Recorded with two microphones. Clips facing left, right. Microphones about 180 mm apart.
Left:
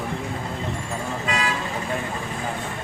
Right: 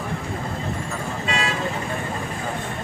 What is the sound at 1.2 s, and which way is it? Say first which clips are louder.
Vehicle: right 1 dB; 30° right (ahead or behind).